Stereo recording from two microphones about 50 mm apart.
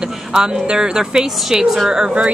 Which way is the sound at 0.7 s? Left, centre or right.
Centre.